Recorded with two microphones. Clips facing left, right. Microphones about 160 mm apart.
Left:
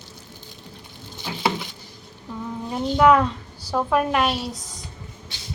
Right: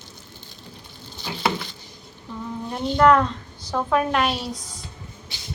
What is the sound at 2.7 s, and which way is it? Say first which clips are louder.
A woman's voice: even; 5° left (ahead or behind).